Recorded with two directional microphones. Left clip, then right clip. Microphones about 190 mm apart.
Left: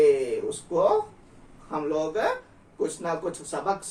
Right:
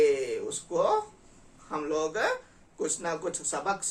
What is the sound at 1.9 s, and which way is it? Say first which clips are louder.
Speech: left 2 dB; 15° right (ahead or behind).